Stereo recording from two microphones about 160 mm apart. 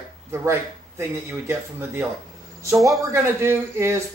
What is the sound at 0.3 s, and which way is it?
A man's voice, 15° right (ahead or behind).